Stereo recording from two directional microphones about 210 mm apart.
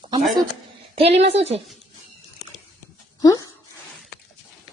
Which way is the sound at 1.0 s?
30° right (ahead or behind).